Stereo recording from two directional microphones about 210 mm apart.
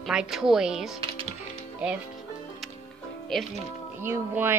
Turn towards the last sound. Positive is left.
turn(degrees=-10)  # may be behind; listen again after turning